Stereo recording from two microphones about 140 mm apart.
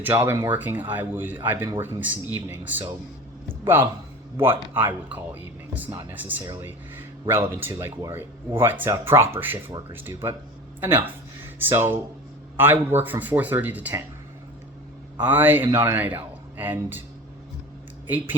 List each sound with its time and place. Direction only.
0.0 s speech: 15° right (ahead or behind)
4.4 s speech: 15° right (ahead or behind)
6.4 s speech: 25° right (ahead or behind)
15.2 s speech: 15° right (ahead or behind)